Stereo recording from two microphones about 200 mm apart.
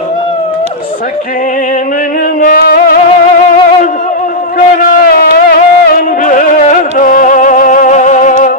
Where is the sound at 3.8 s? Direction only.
40° left (ahead or behind).